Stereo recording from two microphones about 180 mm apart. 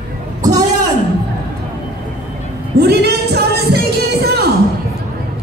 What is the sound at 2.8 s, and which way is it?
Music, 65° right (ahead or behind).